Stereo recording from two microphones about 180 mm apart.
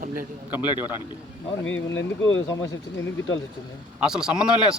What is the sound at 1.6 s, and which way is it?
Speech, 90° left.